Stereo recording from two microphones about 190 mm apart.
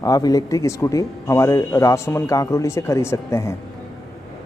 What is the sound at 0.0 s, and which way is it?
A man's voice, 20° left (ahead or behind).